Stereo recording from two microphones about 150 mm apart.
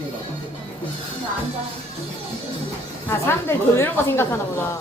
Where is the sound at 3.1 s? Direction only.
15° left (ahead or behind).